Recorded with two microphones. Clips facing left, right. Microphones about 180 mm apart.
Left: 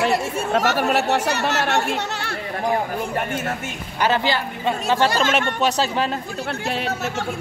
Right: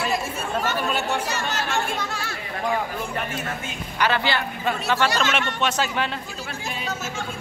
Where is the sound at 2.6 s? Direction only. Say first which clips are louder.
Left 3 dB; 50° left (ahead or behind).